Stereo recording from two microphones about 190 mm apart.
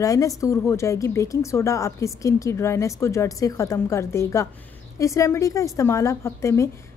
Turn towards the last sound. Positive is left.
turn(degrees=15)  # may be behind; listen again after turning